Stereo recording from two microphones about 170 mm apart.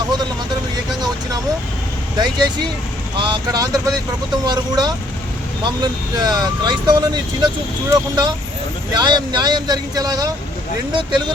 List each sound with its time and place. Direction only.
2.1 s speech: 25° right (ahead or behind)